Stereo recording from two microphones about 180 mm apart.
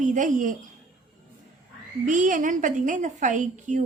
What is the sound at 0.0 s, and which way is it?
Speech, 45° right (ahead or behind).